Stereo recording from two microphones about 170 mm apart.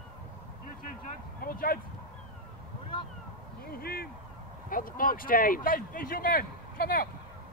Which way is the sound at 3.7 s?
65° left (ahead or behind).